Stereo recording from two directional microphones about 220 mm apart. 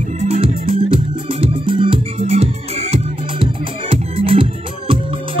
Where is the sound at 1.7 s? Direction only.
25° right (ahead or behind).